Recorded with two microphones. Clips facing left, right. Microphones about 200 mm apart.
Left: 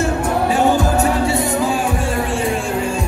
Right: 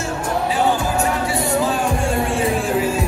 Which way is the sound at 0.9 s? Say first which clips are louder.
Left 4 dB; 25° left (ahead or behind).